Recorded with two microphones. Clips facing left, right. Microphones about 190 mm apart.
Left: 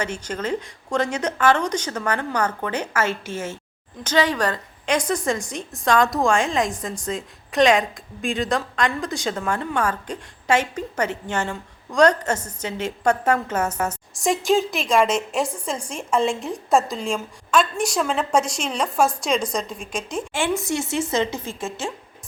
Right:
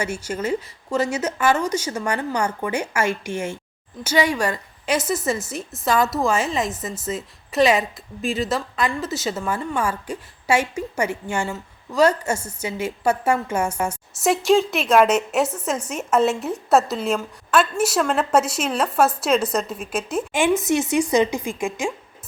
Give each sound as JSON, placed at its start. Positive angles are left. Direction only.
{"t": 0.0, "sound": "a woman's voice", "side_deg": -10}
{"t": 20.6, "sound": "a woman's voice", "side_deg": -20}